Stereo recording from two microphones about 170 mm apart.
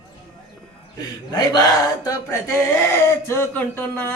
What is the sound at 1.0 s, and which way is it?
A man's voice, 25° left (ahead or behind).